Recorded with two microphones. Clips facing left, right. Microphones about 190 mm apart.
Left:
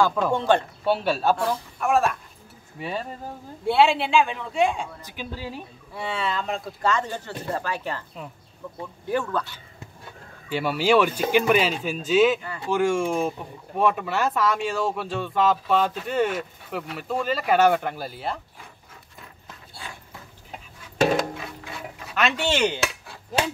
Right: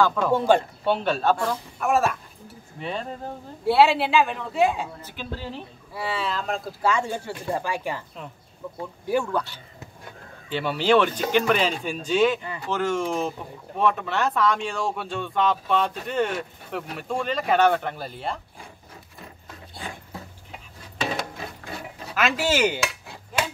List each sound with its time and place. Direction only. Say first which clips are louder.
0.0 s speech: even; 10° left (ahead or behind)
0.3 s speech: right 2 dB; 10° right (ahead or behind)
0.8 s speech: left 1 dB; 5° left (ahead or behind)
5.0 s speech: even; 10° left (ahead or behind)
5.9 s speech: even; centre (ahead or behind)
9.0 s speech: right 2 dB; 10° right (ahead or behind)
10.5 s speech: even; 10° left (ahead or behind)
19.8 s a sound: right 4 dB; 20° right (ahead or behind)
22.1 s speech: right 1 dB; 5° right (ahead or behind)